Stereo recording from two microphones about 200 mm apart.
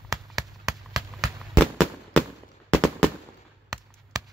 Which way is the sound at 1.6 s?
5° left (ahead or behind).